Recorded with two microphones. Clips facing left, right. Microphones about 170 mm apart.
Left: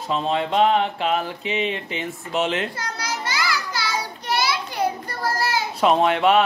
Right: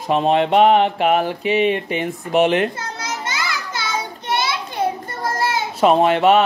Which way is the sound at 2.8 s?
25° right (ahead or behind).